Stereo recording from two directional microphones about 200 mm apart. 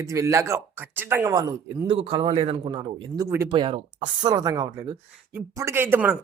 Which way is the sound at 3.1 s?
15° right (ahead or behind).